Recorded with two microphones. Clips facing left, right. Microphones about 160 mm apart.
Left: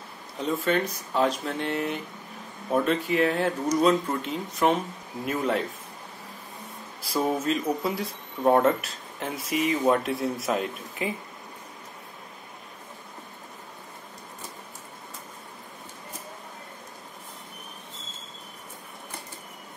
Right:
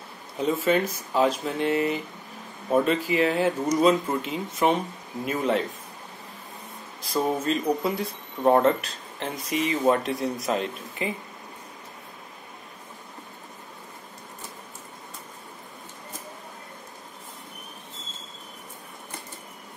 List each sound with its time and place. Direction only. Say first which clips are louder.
0.4 s speech: right 3 dB; 5° right (ahead or behind)
7.0 s speech: right 1 dB; 5° left (ahead or behind)